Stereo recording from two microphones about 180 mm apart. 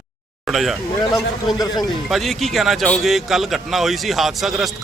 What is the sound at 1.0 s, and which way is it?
Speech, 20° left (ahead or behind).